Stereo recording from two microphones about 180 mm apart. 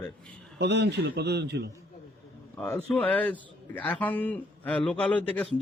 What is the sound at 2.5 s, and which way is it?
Speech, 10° left (ahead or behind).